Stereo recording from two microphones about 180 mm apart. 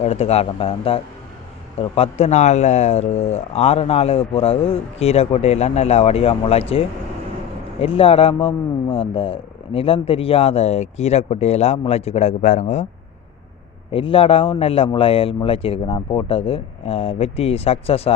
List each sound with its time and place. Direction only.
0.0 s speech: 35° left (ahead or behind)
13.9 s speech: 30° left (ahead or behind)